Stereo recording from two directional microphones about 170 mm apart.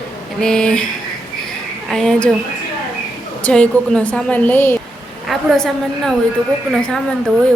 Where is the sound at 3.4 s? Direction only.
5° left (ahead or behind).